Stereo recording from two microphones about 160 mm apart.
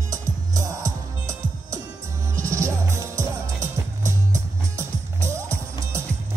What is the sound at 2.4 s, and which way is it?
Music, 20° right (ahead or behind).